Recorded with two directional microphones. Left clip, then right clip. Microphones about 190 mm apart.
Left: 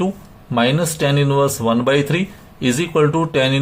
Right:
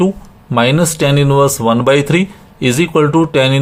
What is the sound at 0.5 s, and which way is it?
Speech, 30° right (ahead or behind).